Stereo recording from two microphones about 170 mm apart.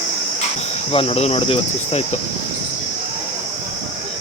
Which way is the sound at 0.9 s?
35° left (ahead or behind).